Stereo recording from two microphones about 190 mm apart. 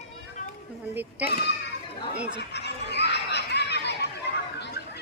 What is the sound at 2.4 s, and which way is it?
Chatter, 60° left (ahead or behind).